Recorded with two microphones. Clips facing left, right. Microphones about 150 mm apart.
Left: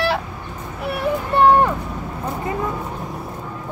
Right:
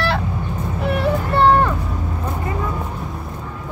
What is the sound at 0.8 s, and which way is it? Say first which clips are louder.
Speech: right 2 dB; 15° left (ahead or behind).